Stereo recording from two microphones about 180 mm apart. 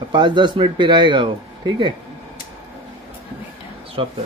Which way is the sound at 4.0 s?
30° right (ahead or behind).